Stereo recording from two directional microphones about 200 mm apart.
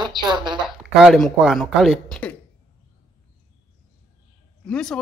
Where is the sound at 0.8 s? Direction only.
Centre (ahead or behind).